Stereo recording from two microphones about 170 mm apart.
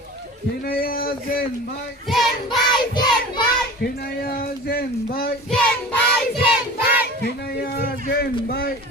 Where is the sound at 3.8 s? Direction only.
65° left (ahead or behind).